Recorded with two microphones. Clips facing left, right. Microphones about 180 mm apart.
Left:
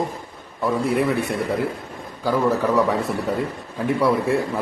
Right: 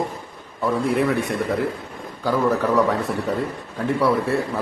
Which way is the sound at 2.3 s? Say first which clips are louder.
Even; 10° left (ahead or behind).